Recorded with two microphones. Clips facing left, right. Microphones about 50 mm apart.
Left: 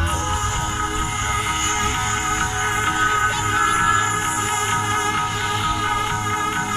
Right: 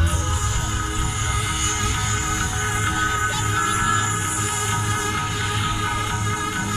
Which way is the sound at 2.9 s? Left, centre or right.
Left.